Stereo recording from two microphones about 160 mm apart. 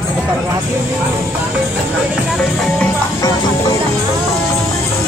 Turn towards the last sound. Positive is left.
turn(degrees=25)  # may be behind; listen again after turning